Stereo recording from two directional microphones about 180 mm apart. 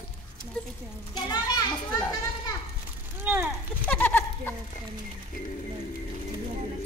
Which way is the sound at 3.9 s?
10° left (ahead or behind).